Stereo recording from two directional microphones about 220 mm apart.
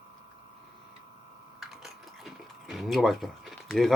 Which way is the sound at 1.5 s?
Centre (ahead or behind).